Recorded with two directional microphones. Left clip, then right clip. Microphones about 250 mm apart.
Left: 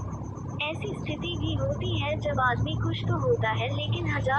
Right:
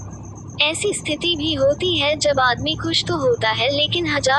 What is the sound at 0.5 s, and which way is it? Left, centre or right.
Speech, right.